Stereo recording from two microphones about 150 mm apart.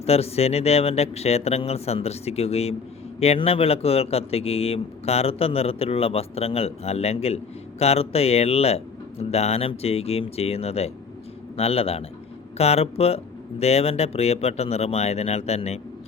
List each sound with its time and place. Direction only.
0.0 s a man's voice: 45° left (ahead or behind)